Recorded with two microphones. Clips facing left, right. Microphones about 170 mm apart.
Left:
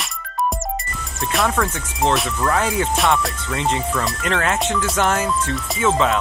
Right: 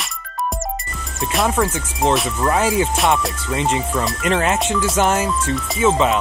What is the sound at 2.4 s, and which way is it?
Speech, 15° right (ahead or behind).